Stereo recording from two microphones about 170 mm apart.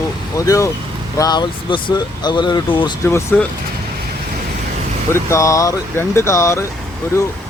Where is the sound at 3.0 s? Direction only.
15° left (ahead or behind).